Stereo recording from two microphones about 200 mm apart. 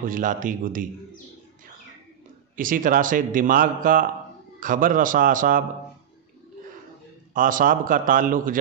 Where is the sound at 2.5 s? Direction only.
45° right (ahead or behind).